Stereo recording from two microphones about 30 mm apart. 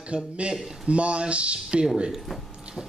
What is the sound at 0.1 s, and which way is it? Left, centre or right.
A man's voice, right.